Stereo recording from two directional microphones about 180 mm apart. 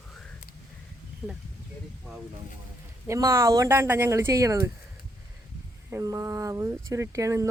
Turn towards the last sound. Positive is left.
turn(degrees=-15)  # may be behind; listen again after turning